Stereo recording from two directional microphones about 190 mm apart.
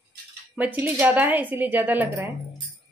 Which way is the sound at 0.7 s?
10° right (ahead or behind).